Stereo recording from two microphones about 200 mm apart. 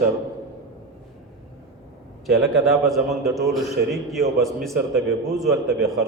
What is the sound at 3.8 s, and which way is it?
Speech, 55° right (ahead or behind).